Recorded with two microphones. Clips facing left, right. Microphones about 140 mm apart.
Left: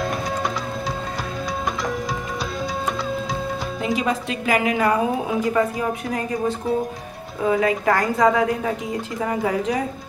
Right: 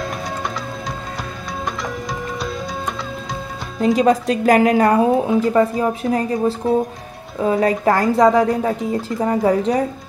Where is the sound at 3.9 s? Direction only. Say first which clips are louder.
Right 8 dB; 40° right (ahead or behind).